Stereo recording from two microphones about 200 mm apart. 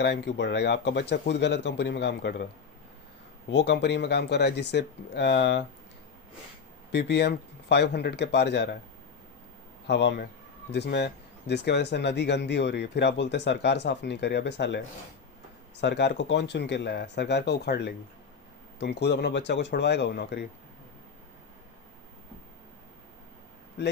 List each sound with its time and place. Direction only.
0.0 s speech: 60° left (ahead or behind)
3.5 s speech: 60° left (ahead or behind)
6.9 s speech: 55° left (ahead or behind)
9.8 s a man's voice: 60° left (ahead or behind)
15.8 s speech: 60° left (ahead or behind)